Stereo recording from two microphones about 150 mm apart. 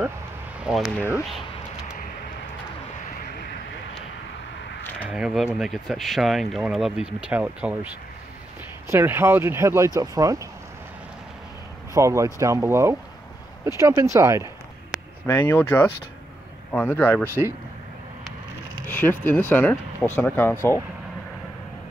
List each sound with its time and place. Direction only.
0.6 s speech: 5° right (ahead or behind)
0.9 s speech: 15° left (ahead or behind)
5.1 s speech: 5° right (ahead or behind); by 10.5 s 25° right (ahead or behind)
11.9 s speech: 20° right (ahead or behind)
15.2 s speech: 15° left (ahead or behind)
17.2 s speech: 15° right (ahead or behind)
18.9 s speech: 15° left (ahead or behind)